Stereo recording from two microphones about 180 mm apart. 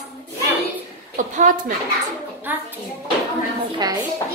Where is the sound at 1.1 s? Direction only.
45° right (ahead or behind).